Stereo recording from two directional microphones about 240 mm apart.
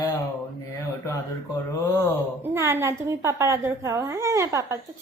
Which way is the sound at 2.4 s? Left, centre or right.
Centre.